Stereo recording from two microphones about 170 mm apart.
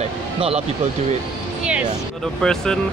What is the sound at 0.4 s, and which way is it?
Speech, 35° right (ahead or behind).